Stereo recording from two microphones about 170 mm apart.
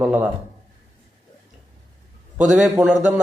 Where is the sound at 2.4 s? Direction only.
5° right (ahead or behind).